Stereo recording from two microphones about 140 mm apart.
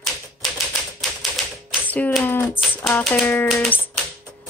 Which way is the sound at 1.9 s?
10° left (ahead or behind).